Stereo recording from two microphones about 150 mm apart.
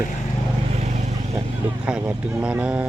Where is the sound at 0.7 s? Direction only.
50° right (ahead or behind).